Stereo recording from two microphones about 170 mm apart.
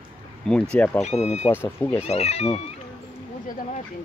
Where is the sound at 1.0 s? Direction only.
40° left (ahead or behind).